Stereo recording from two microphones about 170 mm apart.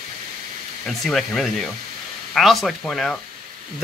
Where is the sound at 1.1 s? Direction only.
Centre (ahead or behind).